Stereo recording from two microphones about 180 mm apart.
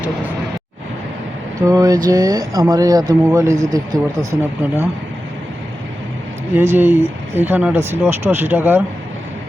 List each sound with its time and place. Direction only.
1.6 s speech: 20° right (ahead or behind)
6.6 s speech: 10° right (ahead or behind)